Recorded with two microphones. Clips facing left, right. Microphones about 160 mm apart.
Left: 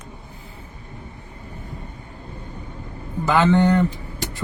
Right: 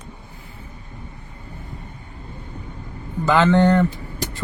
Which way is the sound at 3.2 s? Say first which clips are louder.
Right 1 dB; 15° left (ahead or behind).